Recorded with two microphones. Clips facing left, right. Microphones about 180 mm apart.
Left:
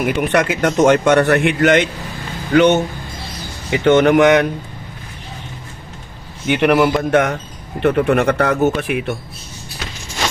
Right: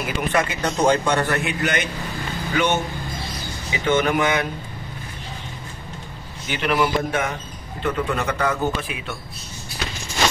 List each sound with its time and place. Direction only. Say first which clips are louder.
0.0 s speech: left 6 dB; 75° left (ahead or behind)
2.5 s speech: left 10 dB; 70° left (ahead or behind)
6.4 s speech: left 8 dB; 65° left (ahead or behind)